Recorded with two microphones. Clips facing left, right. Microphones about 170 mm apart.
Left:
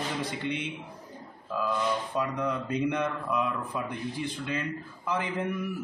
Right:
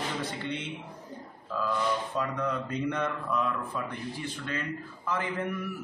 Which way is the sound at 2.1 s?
15° left (ahead or behind).